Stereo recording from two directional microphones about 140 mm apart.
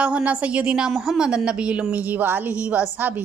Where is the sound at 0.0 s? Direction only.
10° right (ahead or behind).